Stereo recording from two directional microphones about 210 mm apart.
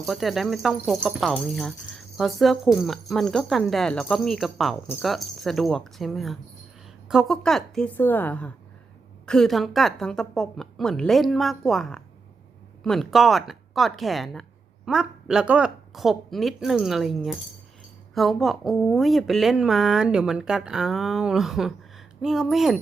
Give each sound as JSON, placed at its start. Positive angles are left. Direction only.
{"t": 0.0, "sound": "a woman's voice", "side_deg": 0}